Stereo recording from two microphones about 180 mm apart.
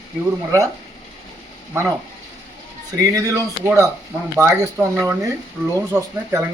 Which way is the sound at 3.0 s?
20° right (ahead or behind).